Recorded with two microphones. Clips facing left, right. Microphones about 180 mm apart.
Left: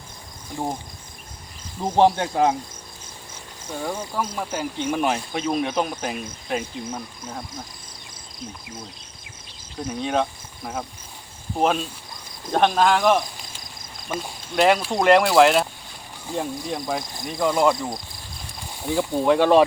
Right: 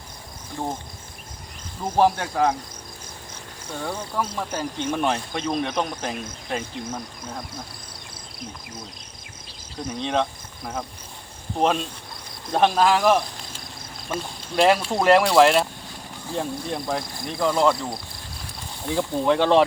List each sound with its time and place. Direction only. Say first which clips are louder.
0.6 s speech: left 1 dB; 15° left (ahead or behind)
1.8 s speech: left 2 dB; 20° left (ahead or behind)
3.7 s speech: left 2 dB; 10° left (ahead or behind)
9.8 s speech: left 1 dB; 5° left (ahead or behind)
11.5 s speech: even; centre (ahead or behind)
16.3 s speech: even; 10° left (ahead or behind)
16.7 s speech: even; centre (ahead or behind)